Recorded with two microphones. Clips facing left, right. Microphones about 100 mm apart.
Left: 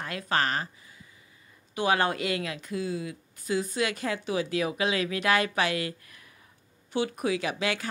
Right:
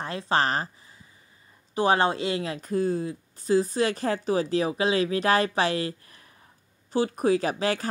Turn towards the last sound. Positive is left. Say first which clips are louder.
# right 4 dB
turn(degrees=-35)  # may be behind; listen again after turning